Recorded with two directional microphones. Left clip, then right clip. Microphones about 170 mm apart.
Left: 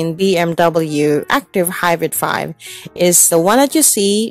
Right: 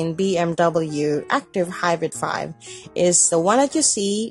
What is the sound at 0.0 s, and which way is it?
Speech, 50° left (ahead or behind).